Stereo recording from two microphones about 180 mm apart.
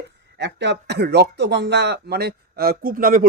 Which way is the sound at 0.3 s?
75° right (ahead or behind).